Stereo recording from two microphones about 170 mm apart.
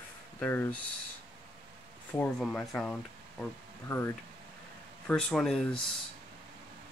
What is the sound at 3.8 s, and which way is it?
Speech, 15° left (ahead or behind).